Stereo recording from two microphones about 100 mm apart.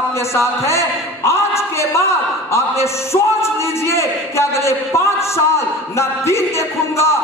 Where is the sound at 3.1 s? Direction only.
30° left (ahead or behind).